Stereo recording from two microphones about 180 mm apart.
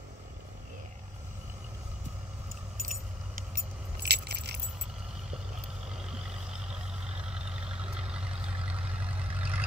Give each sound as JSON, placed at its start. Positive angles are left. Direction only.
{"t": 2.8, "sound": "keys jangling", "side_deg": -50}
{"t": 6.0, "sound": "vehicle", "side_deg": -5}